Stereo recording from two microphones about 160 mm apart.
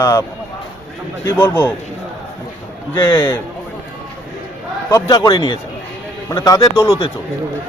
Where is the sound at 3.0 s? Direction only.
30° left (ahead or behind).